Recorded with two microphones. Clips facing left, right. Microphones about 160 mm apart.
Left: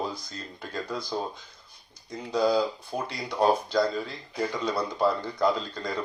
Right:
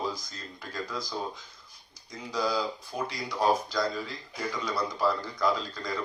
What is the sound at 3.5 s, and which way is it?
Speech, 55° left (ahead or behind).